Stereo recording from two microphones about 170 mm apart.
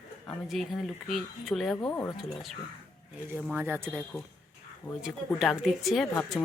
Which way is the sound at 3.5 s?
10° right (ahead or behind).